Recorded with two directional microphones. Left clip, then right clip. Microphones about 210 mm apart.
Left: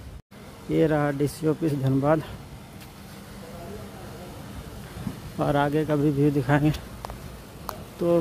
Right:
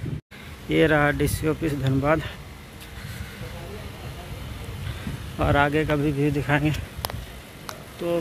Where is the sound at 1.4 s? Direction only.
15° left (ahead or behind).